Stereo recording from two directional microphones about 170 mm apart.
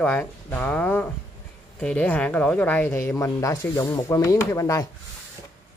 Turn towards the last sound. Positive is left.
turn(degrees=20)  # may be behind; listen again after turning